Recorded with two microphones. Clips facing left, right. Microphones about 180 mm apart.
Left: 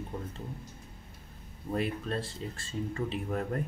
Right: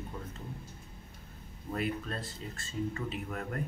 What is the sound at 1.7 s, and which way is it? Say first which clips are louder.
Speech: left 3 dB; 30° left (ahead or behind).